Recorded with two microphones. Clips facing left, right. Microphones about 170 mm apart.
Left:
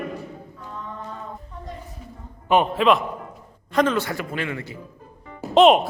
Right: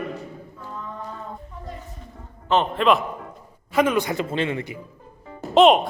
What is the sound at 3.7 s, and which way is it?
A man's voice, 10° right (ahead or behind).